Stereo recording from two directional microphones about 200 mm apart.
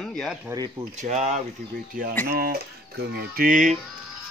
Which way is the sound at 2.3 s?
50° right (ahead or behind).